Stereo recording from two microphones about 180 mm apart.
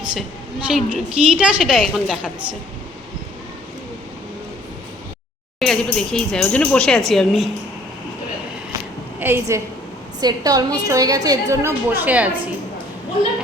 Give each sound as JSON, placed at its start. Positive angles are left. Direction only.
{"t": 0.7, "sound": "a woman's voice", "side_deg": -5}
{"t": 5.5, "sound": "a woman's voice", "side_deg": 5}
{"t": 9.2, "sound": "a woman's voice", "side_deg": -10}